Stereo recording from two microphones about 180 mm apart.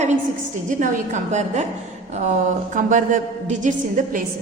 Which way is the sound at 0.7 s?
45° right (ahead or behind).